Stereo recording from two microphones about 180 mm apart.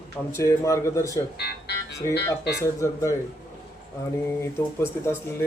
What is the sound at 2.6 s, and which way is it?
Speech, 15° left (ahead or behind).